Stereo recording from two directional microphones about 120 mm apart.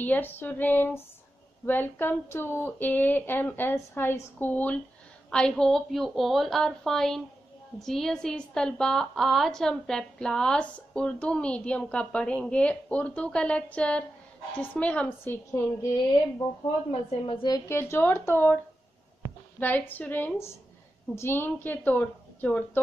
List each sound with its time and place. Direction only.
0.0 s a woman's voice: 15° left (ahead or behind)
17.5 s speech: 25° left (ahead or behind)
19.6 s speech: 15° left (ahead or behind)